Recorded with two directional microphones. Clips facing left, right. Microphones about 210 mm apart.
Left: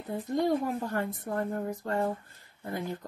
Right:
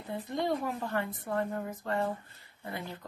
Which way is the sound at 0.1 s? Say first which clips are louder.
Left 4 dB; 45° left (ahead or behind).